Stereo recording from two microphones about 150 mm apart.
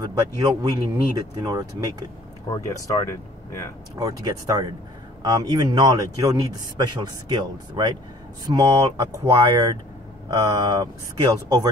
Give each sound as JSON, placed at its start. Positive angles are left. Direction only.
{"t": 0.0, "sound": "speech", "side_deg": -25}
{"t": 2.5, "sound": "speech", "side_deg": 25}
{"t": 4.0, "sound": "speech", "side_deg": -25}